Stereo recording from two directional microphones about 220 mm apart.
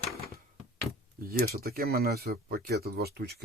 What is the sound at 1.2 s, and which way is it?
Speech, 40° right (ahead or behind).